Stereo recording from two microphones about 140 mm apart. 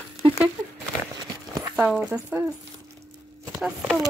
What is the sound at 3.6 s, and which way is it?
Speech, centre (ahead or behind).